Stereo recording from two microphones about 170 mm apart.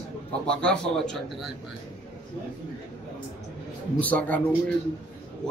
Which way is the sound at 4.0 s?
10° left (ahead or behind).